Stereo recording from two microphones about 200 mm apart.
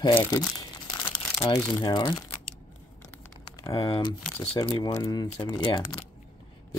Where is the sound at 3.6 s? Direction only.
25° left (ahead or behind).